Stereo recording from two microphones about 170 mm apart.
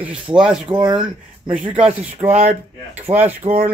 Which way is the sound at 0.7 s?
25° right (ahead or behind).